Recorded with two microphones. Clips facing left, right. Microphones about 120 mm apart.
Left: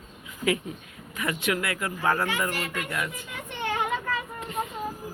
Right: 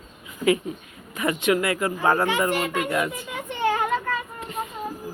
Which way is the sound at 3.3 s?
10° right (ahead or behind).